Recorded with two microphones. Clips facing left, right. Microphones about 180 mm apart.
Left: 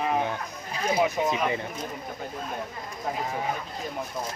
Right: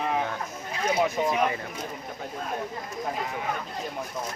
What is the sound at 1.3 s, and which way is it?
Speech, 20° left (ahead or behind).